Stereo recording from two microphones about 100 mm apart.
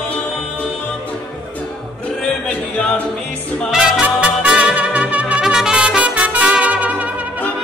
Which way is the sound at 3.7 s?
10° right (ahead or behind).